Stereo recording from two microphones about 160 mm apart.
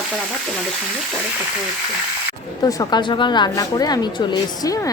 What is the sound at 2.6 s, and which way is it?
A woman's voice, 25° left (ahead or behind).